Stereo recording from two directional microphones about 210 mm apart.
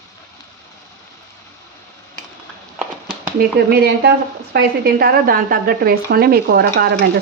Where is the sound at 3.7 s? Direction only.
50° right (ahead or behind).